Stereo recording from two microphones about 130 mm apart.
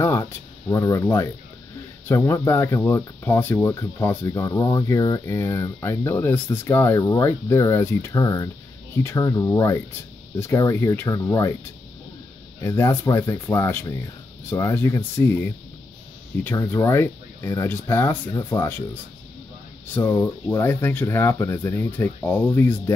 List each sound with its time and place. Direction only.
0.0 s speech: 20° left (ahead or behind)
12.5 s speech: 20° left (ahead or behind)
20.1 s speech: 20° left (ahead or behind)